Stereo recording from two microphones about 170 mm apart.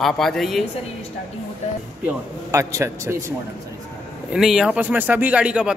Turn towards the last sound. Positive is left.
turn(degrees=-5)  # may be behind; listen again after turning